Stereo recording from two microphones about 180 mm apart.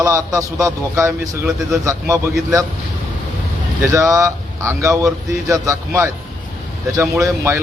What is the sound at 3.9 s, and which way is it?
A man's voice, 15° right (ahead or behind).